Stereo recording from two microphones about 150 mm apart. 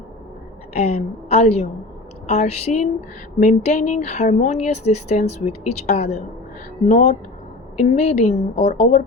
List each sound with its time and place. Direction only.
0.7 s speech: 45° left (ahead or behind)